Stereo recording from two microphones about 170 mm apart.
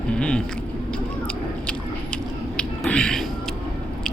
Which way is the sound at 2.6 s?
5° left (ahead or behind).